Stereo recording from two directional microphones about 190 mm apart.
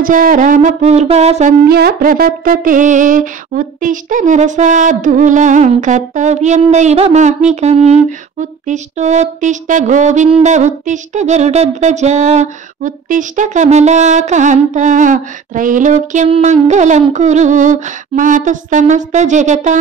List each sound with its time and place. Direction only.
0.0 s music: 45° right (ahead or behind)
1.6 s music: 55° right (ahead or behind)